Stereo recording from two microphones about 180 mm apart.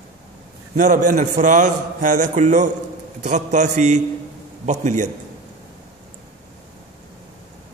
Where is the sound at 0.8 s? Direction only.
45° right (ahead or behind).